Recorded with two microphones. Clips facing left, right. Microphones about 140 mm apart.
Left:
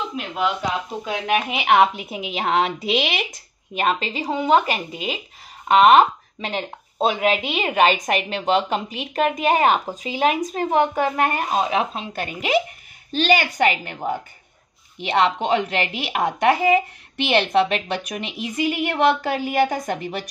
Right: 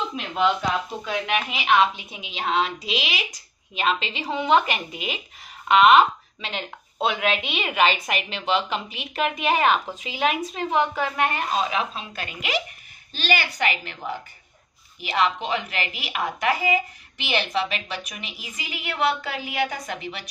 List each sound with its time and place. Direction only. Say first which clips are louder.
0.1 s speech: even; 5° left (ahead or behind)
1.0 s a woman's voice: left 5 dB; 40° left (ahead or behind)
1.5 s a woman's voice: left 3 dB; 65° left (ahead or behind)
3.3 s a woman's voice: left 5 dB; 50° left (ahead or behind); by 5.2 s 30° left (ahead or behind)
5.7 s a woman's voice: left 2 dB; 45° left (ahead or behind)
11.9 s a woman's voice: left 6 dB; 30° left (ahead or behind)
13.4 s a woman's voice: left 6 dB; 55° left (ahead or behind)
15.0 s a woman's voice: left 5 dB; 30° left (ahead or behind)
16.7 s a woman's voice: left 6 dB; 65° left (ahead or behind)